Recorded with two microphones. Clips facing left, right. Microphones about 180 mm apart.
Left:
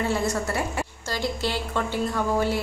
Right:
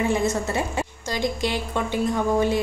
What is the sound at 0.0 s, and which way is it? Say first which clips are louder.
A woman's voice: right 3 dB; 20° right (ahead or behind).